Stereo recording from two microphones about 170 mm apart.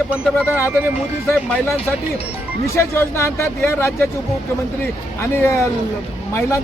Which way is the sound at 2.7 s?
15° left (ahead or behind).